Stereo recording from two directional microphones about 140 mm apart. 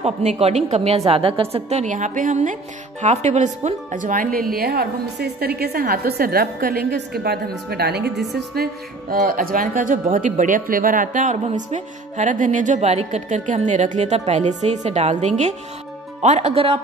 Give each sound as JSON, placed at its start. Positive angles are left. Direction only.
{"t": 0.0, "sound": "a woman's voice", "side_deg": -50}